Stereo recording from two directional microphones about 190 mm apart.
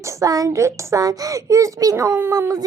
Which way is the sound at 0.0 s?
15° right (ahead or behind).